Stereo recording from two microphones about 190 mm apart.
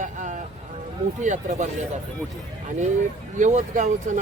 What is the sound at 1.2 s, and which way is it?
Speech, 40° right (ahead or behind).